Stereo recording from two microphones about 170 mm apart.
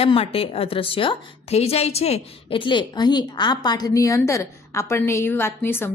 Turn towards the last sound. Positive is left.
turn(degrees=15)  # may be behind; listen again after turning